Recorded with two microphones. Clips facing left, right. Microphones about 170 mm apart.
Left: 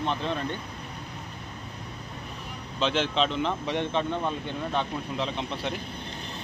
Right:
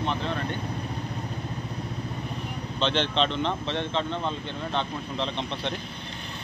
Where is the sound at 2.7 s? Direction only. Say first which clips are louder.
Even; 5° left (ahead or behind).